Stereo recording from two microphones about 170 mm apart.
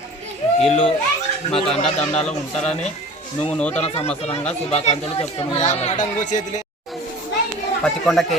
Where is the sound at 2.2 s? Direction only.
5° left (ahead or behind).